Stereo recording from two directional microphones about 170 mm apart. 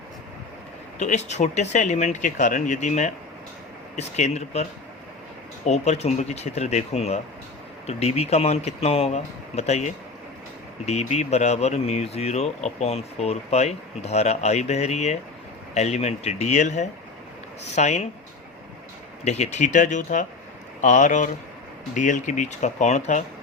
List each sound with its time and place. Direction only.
0.9 s speech: 45° left (ahead or behind)
5.6 s speech: 40° left (ahead or behind)
19.2 s speech: 40° left (ahead or behind)